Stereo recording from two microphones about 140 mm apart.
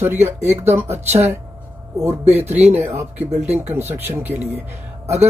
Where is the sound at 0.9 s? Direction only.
50° right (ahead or behind).